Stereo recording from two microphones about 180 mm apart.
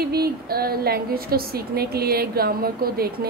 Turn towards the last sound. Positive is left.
turn(degrees=-55)  # may be behind; listen again after turning